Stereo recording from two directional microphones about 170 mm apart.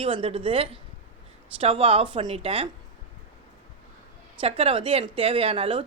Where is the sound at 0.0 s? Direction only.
35° right (ahead or behind).